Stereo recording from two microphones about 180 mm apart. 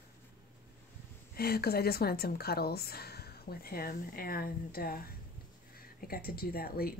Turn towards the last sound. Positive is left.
turn(degrees=55)  # may be behind; listen again after turning